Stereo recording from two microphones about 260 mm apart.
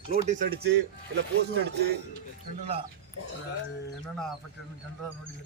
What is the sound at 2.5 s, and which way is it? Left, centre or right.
Speech, right.